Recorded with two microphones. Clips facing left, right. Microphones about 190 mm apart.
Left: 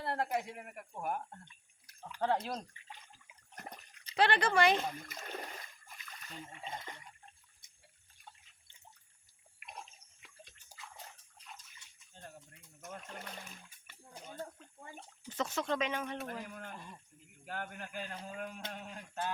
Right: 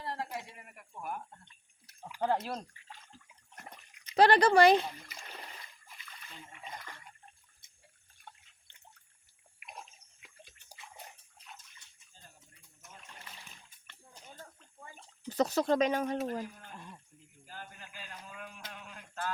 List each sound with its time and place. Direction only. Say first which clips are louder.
0.0 s speech: left 4 dB; 60° left (ahead or behind)
2.0 s speech: right 2 dB; 10° right (ahead or behind)
3.5 s water: left 2 dB; 40° left (ahead or behind)
4.1 s speech: right 7 dB; 40° right (ahead or behind)
4.8 s splash: left 2 dB; 50° left (ahead or behind)
6.6 s speech: left 1 dB; 25° left (ahead or behind)
8.2 s water: right 3 dB; 65° right (ahead or behind)
9.6 s water: right 1 dB; centre (ahead or behind)
12.8 s speech: left 8 dB; 55° left (ahead or behind)
13.9 s a sound: right 2 dB; 10° left (ahead or behind)
15.3 s speech: right 7 dB; 35° right (ahead or behind)
17.4 s speech: left 6 dB; 65° left (ahead or behind)
18.2 s speech: left 5 dB; 40° left (ahead or behind)